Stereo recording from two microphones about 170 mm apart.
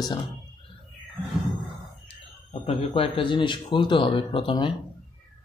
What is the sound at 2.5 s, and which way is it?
Speech, 35° left (ahead or behind).